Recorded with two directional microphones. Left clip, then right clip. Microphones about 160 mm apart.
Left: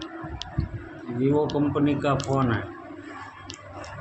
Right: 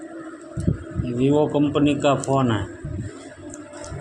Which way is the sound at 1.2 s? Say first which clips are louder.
Right 4 dB; 35° right (ahead or behind).